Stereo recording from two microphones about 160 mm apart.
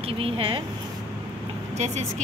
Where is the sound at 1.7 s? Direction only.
45° right (ahead or behind).